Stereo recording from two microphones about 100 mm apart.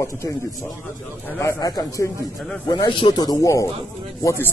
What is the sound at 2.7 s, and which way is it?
Speech, 50° left (ahead or behind).